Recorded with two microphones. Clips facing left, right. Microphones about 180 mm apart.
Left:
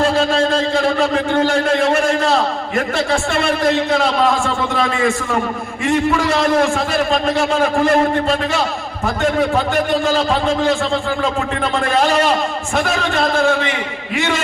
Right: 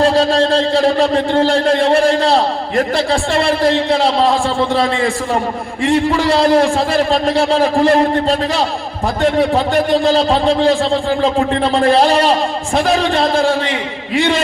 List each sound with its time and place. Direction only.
0.0 s a man's voice: 35° right (ahead or behind)
10.0 s a man's voice: 35° right (ahead or behind)